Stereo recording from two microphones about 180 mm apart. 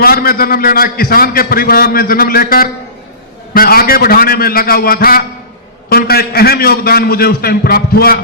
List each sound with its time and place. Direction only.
0.0 s a man's voice: 55° left (ahead or behind)